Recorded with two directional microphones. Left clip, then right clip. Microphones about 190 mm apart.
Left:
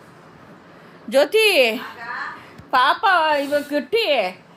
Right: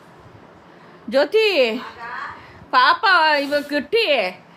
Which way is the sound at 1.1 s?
15° right (ahead or behind).